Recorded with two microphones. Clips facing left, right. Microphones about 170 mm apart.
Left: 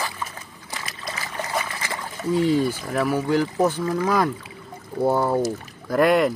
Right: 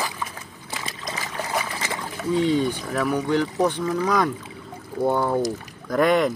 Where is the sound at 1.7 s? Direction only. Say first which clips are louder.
Right 1 dB; 15° right (ahead or behind).